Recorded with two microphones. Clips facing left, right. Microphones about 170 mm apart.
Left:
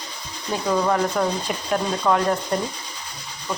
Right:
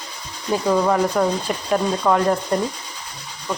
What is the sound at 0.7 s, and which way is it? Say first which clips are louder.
Speech: right 2 dB; 5° right (ahead or behind).